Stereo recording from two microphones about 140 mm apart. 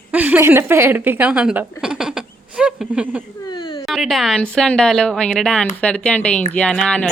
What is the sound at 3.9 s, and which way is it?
Speech, centre (ahead or behind).